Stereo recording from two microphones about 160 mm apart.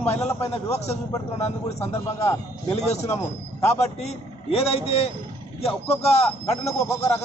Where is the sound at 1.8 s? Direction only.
15° left (ahead or behind).